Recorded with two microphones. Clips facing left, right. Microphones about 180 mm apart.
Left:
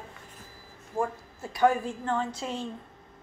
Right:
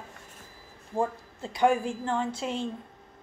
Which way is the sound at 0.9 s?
20° right (ahead or behind).